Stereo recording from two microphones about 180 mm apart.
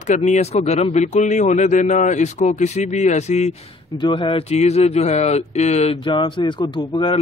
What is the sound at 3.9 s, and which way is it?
A man's voice, 25° left (ahead or behind).